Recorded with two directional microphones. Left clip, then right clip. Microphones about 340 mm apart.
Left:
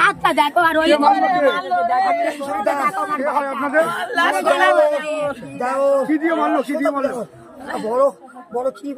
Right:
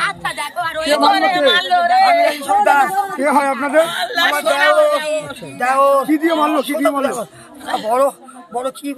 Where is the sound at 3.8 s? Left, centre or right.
Centre.